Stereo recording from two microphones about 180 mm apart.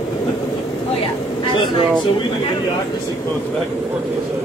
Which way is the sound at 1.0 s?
30° left (ahead or behind).